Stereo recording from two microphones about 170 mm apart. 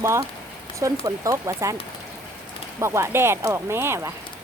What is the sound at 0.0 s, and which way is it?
Speech, 15° right (ahead or behind).